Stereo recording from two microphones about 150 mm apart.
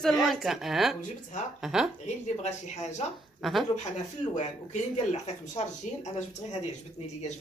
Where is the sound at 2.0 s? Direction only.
50° left (ahead or behind).